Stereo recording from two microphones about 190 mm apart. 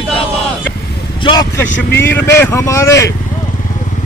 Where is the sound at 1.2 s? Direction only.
25° left (ahead or behind).